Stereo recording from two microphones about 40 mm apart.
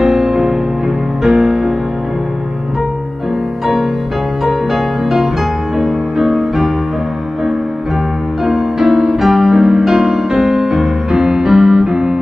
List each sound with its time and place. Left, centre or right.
0.0 s music: centre
4.5 s music: centre
8.5 s music: centre